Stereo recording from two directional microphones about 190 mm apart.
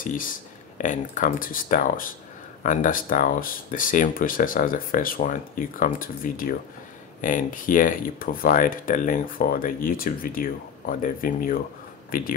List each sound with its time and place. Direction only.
0.0 s speech: 45° left (ahead or behind)